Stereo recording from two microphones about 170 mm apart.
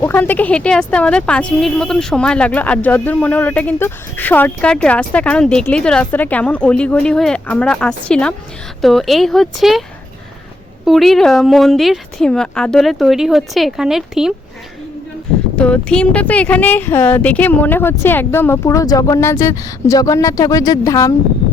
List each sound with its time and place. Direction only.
0.0 s a woman's voice: 10° left (ahead or behind)
10.8 s speech: centre (ahead or behind)
15.5 s a woman's voice: 5° left (ahead or behind)